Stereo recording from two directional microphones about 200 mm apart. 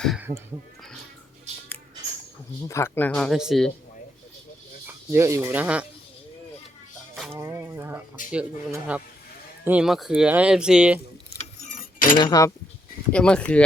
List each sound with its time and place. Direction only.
0.2 s a sound: 15° right (ahead or behind)
2.6 s speech: 15° left (ahead or behind)
4.9 s speech: 15° right (ahead or behind)
7.3 s speech: 10° right (ahead or behind)
11.8 s cutlery: 45° left (ahead or behind)
12.1 s speech: 20° left (ahead or behind)
13.1 s speech: 5° left (ahead or behind)